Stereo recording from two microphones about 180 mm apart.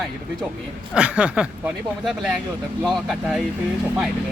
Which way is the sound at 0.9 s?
5° right (ahead or behind).